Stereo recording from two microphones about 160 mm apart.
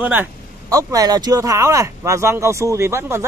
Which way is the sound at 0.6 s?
20° right (ahead or behind).